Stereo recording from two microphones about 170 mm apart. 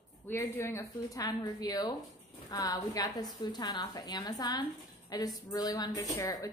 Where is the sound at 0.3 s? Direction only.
15° left (ahead or behind).